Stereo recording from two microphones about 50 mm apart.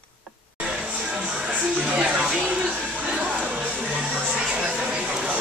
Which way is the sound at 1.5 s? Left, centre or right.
Right.